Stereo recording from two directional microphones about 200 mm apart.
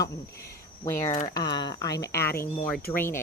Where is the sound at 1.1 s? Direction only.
25° left (ahead or behind).